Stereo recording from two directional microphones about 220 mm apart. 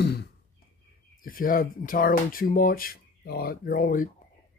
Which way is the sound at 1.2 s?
40° left (ahead or behind).